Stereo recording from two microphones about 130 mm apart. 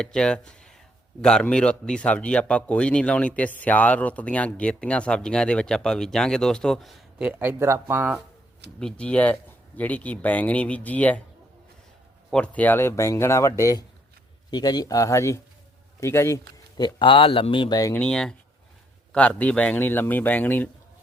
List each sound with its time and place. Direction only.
0.0 s speech: 5° left (ahead or behind); by 8.2 s 15° right (ahead or behind)
8.8 s speech: 10° left (ahead or behind)
12.3 s speech: 10° left (ahead or behind)
16.7 s speech: 35° left (ahead or behind)
17.9 s speech: 5° left (ahead or behind)